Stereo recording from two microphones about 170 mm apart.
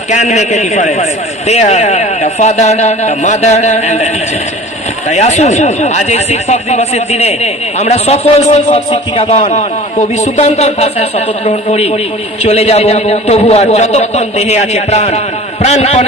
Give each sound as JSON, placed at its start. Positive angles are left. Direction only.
{"t": 0.1, "sound": "a man's voice", "side_deg": 45}